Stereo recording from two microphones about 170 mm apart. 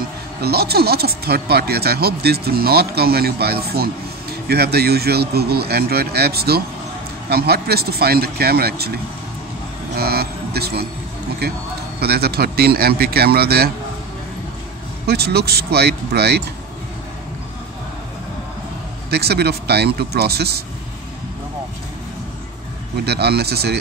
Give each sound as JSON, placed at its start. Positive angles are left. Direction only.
{"t": 0.4, "sound": "speech", "side_deg": -70}
{"t": 9.9, "sound": "a man's voice", "side_deg": -65}
{"t": 15.0, "sound": "speech", "side_deg": -70}
{"t": 19.0, "sound": "speech", "side_deg": -70}
{"t": 22.9, "sound": "speech", "side_deg": -70}